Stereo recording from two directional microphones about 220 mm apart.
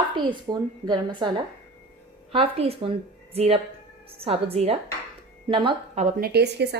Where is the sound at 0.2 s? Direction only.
20° right (ahead or behind).